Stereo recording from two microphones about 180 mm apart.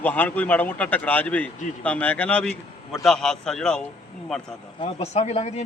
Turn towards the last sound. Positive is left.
turn(degrees=35)  # may be behind; listen again after turning